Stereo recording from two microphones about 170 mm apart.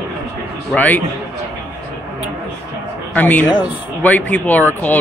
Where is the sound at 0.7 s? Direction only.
10° left (ahead or behind).